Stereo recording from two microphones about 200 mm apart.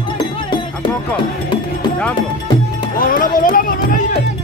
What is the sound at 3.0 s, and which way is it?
Music, 45° left (ahead or behind).